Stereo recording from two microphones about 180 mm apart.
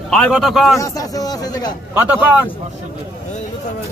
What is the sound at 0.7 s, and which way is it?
Speech, 20° left (ahead or behind).